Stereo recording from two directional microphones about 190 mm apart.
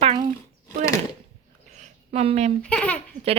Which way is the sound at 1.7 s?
35° right (ahead or behind).